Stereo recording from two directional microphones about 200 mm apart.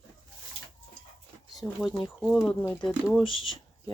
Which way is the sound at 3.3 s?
25° left (ahead or behind).